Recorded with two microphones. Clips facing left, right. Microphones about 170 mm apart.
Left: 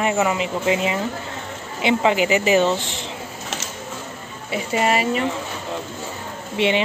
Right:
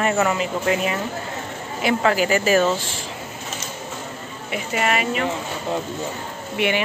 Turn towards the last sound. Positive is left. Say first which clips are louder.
# left 2 dB
turn(degrees=25)  # may be behind; listen again after turning